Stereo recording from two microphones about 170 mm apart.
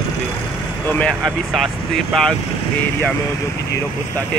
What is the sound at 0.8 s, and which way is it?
Speech, 5° left (ahead or behind).